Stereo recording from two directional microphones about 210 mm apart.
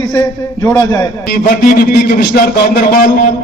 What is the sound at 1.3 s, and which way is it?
A man's voice, 40° left (ahead or behind).